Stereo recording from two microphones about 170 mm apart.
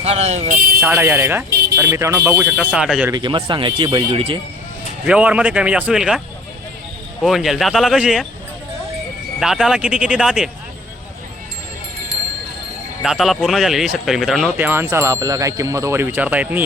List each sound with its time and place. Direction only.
0.0 s speech: 40° right (ahead or behind)
0.8 s wind chime: 15° right (ahead or behind)
1.5 s vehicle: 70° right (ahead or behind)
1.7 s wind chime: 15° right (ahead or behind)
2.7 s speech: 5° right (ahead or behind)
3.1 s speech: 25° right (ahead or behind)
5.0 s wind chime: 5° right (ahead or behind)
7.2 s speech: centre (ahead or behind)
9.4 s speech: 5° right (ahead or behind)
13.0 s speech: centre (ahead or behind)
14.5 s wind chime: 15° right (ahead or behind)